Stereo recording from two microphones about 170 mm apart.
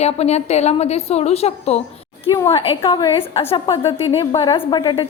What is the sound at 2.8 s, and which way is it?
A woman's voice, 30° left (ahead or behind).